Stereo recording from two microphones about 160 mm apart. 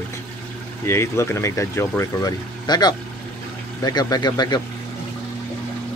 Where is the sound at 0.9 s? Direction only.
15° left (ahead or behind).